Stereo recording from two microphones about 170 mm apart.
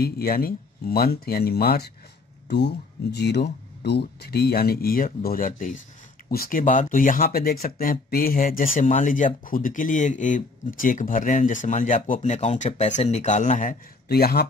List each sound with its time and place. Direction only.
0.0 s speech: 60° left (ahead or behind)
2.4 s speech: 85° left; by 13.7 s 50° left (ahead or behind)
14.0 s speech: 65° left (ahead or behind)